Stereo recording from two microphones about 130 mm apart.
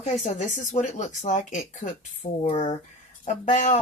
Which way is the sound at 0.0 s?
65° left (ahead or behind).